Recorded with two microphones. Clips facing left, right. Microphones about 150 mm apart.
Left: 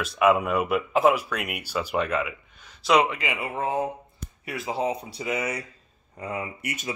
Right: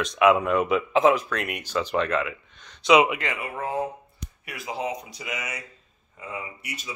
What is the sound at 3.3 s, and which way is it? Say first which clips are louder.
Speech: left 2 dB; 25° left (ahead or behind).